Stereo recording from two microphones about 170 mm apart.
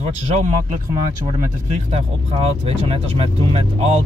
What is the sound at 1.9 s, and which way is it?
Speech, 35° right (ahead or behind).